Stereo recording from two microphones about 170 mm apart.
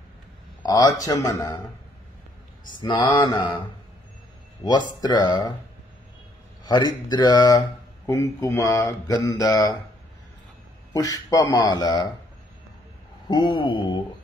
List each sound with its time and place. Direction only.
0.7 s speech: 20° left (ahead or behind)
2.8 s speech: 25° left (ahead or behind)
5.0 s speech: 25° left (ahead or behind)
6.6 s a man's voice: 25° left (ahead or behind)
10.9 s speech: 20° left (ahead or behind)
13.3 s speech: 25° left (ahead or behind)